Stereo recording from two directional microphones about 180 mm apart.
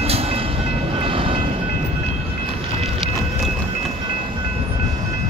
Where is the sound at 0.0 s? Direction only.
35° right (ahead or behind).